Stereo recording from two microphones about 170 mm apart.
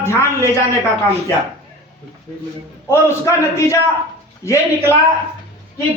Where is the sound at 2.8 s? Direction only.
15° left (ahead or behind).